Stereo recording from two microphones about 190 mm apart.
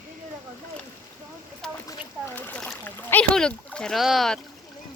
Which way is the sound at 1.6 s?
Centre (ahead or behind).